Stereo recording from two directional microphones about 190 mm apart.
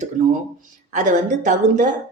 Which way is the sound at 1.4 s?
40° right (ahead or behind).